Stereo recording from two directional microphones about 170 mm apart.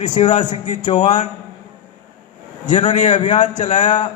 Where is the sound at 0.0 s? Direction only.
45° left (ahead or behind).